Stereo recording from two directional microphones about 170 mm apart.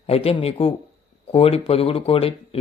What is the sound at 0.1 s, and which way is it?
Speech, 35° left (ahead or behind).